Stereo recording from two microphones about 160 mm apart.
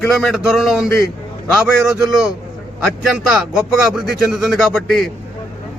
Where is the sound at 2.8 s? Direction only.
Centre (ahead or behind).